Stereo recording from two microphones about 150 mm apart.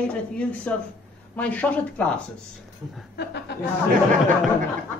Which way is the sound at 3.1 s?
90° left.